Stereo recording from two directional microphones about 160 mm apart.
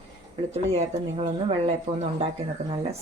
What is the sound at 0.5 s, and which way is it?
Speech, 40° right (ahead or behind).